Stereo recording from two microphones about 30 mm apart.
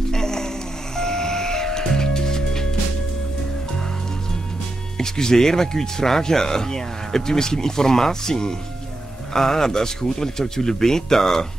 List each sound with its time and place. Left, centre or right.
0.1 s music: centre
4.9 s speech: centre